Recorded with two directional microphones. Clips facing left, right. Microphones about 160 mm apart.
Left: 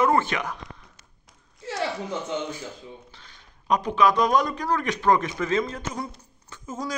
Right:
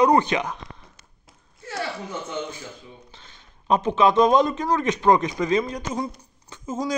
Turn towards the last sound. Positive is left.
turn(degrees=-20)  # may be behind; listen again after turning